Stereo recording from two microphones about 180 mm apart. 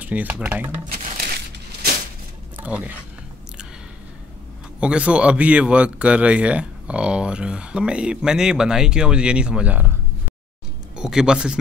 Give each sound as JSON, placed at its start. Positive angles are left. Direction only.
{"t": 0.0, "sound": "speech", "side_deg": -10}
{"t": 0.9, "sound": "a sound", "side_deg": -55}
{"t": 2.6, "sound": "speech", "side_deg": -10}
{"t": 4.7, "sound": "speech", "side_deg": -5}
{"t": 11.0, "sound": "speech", "side_deg": -5}